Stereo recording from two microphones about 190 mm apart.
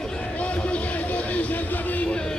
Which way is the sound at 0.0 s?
5° left (ahead or behind).